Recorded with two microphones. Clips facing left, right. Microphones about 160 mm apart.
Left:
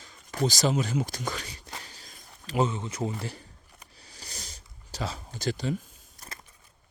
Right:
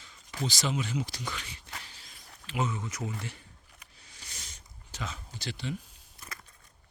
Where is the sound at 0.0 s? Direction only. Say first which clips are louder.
Left 7 dB; 45° left (ahead or behind).